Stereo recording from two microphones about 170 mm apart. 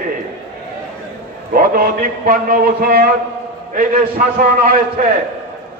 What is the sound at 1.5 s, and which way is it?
A man's voice, 60° right (ahead or behind).